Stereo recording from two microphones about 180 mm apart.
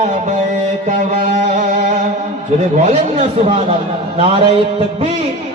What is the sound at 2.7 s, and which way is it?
Speech, 35° right (ahead or behind).